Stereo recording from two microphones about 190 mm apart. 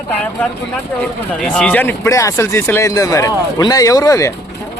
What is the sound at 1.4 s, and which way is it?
A man's voice, 5° left (ahead or behind).